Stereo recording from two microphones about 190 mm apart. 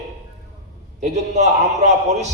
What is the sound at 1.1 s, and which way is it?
Speech, 35° right (ahead or behind).